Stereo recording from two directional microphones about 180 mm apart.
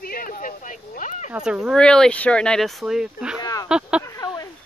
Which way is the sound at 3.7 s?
5° right (ahead or behind).